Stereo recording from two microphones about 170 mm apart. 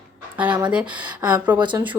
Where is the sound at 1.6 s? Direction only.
25° right (ahead or behind).